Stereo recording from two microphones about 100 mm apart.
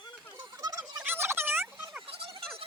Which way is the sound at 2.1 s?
65° right (ahead or behind).